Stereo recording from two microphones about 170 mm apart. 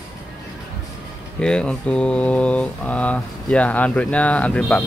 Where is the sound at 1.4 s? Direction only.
5° left (ahead or behind).